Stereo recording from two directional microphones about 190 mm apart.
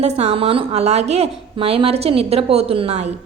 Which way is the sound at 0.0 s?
35° right (ahead or behind).